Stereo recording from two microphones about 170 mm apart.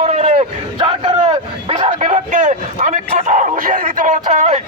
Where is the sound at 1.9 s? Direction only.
45° right (ahead or behind).